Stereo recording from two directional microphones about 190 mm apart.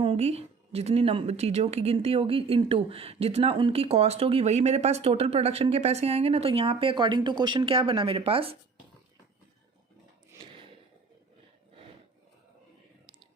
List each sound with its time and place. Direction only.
0.0 s a woman's voice: 30° right (ahead or behind)